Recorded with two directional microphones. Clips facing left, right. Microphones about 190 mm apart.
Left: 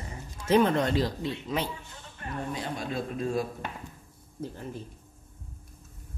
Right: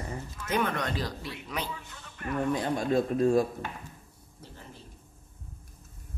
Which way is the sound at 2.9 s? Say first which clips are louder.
Right 7 dB; 45° right (ahead or behind).